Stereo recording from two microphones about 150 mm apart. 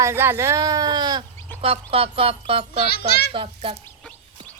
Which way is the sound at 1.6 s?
40° right (ahead or behind).